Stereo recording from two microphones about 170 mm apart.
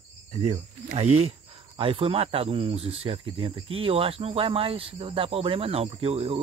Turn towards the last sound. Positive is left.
turn(degrees=-35)  # may be behind; listen again after turning